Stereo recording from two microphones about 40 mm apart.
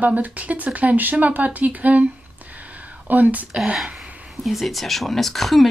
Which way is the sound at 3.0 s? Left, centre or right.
Right.